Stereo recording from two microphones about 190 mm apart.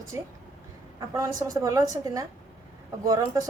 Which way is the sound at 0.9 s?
15° right (ahead or behind).